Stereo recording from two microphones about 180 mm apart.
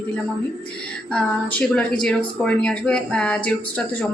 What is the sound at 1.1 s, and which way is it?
Speech, 5° left (ahead or behind).